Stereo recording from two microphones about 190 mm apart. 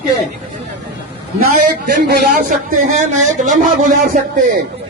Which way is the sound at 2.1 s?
45° right (ahead or behind).